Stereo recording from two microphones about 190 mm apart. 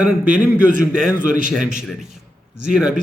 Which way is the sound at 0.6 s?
45° right (ahead or behind).